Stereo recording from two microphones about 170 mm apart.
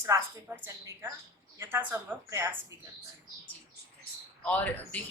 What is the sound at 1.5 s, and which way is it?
Speech, 10° right (ahead or behind).